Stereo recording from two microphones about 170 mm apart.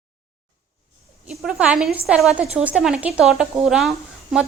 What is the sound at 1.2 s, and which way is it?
A woman's voice, 5° right (ahead or behind).